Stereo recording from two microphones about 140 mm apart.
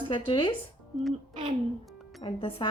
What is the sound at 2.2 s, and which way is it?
Speech, 40° left (ahead or behind).